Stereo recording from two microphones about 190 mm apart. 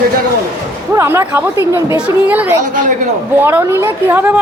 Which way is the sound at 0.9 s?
15° right (ahead or behind).